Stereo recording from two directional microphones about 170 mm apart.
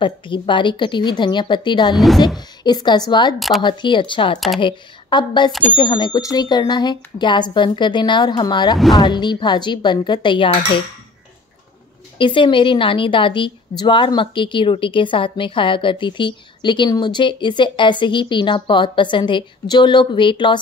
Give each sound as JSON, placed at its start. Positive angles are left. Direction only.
{"t": 0.0, "sound": "a woman's voice", "side_deg": 30}
{"t": 2.0, "sound": "speech", "side_deg": 0}
{"t": 2.2, "sound": "a woman's voice", "side_deg": 25}
{"t": 3.3, "sound": "speech", "side_deg": 0}
{"t": 3.6, "sound": "a woman's voice", "side_deg": 25}
{"t": 12.2, "sound": "a woman's voice", "side_deg": 30}